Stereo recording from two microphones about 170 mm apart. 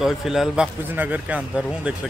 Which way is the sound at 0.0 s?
Centre (ahead or behind).